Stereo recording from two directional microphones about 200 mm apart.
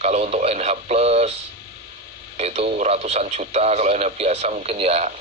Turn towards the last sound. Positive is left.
turn(degrees=-30)  # may be behind; listen again after turning